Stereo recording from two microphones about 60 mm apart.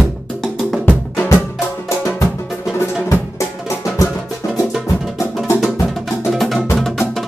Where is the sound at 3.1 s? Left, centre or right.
Left.